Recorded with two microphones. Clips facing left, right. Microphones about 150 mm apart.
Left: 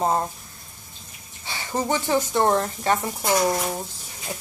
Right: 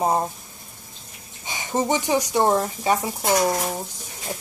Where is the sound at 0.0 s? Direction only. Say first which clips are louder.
Right 1 dB; 15° right (ahead or behind).